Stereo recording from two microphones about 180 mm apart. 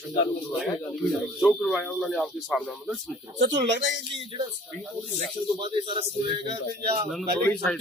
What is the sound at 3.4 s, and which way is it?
Speech, 40° right (ahead or behind).